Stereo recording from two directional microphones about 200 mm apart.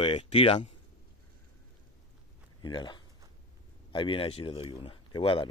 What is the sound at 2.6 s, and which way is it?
Speech, 20° left (ahead or behind).